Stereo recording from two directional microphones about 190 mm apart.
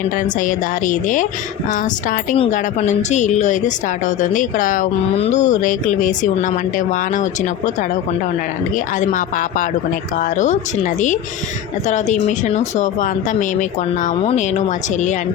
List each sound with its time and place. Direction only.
0.3 s speech: 45° left (ahead or behind)